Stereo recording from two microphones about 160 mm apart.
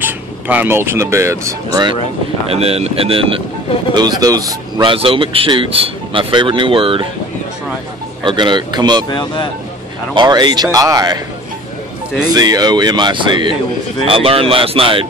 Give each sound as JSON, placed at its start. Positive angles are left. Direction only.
{"t": 0.0, "sound": "speech", "side_deg": -10}
{"t": 2.5, "sound": "a man's voice", "side_deg": -40}
{"t": 3.9, "sound": "a man's voice", "side_deg": -25}
{"t": 8.2, "sound": "speech", "side_deg": -30}
{"t": 9.1, "sound": "speech", "side_deg": 30}
{"t": 10.1, "sound": "speech", "side_deg": -25}
{"t": 12.4, "sound": "a man's voice", "side_deg": -25}